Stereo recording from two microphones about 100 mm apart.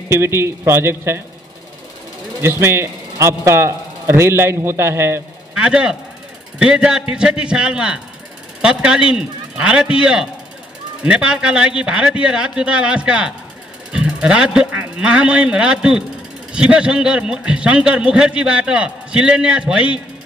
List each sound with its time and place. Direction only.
0.1 s a man's voice: 25° right (ahead or behind)
2.4 s a man's voice: 25° right (ahead or behind)
5.6 s a man's voice: 10° right (ahead or behind)